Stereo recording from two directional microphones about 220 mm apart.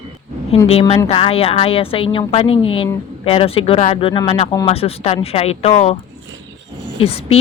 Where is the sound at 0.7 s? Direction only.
25° left (ahead or behind).